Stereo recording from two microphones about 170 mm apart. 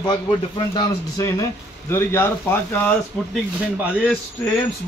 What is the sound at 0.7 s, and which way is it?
Speech, 20° left (ahead or behind).